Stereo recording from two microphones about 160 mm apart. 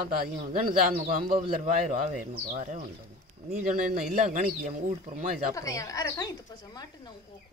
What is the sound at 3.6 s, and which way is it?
Speech, 65° right (ahead or behind).